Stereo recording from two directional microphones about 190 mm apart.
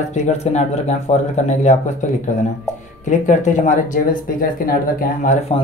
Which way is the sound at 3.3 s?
40° left (ahead or behind).